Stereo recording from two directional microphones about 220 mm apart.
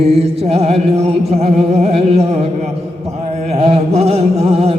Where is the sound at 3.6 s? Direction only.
30° right (ahead or behind).